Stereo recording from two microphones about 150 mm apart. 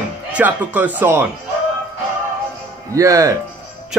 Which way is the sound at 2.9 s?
20° right (ahead or behind).